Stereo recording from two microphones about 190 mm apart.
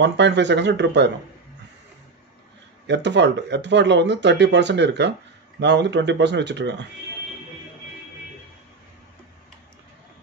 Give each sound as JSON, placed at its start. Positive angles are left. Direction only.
{"t": 0.0, "sound": "speech", "side_deg": -65}
{"t": 2.9, "sound": "speech", "side_deg": -65}